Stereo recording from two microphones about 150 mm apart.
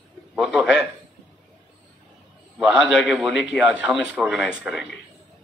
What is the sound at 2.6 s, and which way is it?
A man's voice, 5° right (ahead or behind).